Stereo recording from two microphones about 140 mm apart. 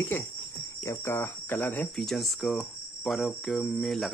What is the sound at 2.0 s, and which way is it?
Cricket, centre (ahead or behind).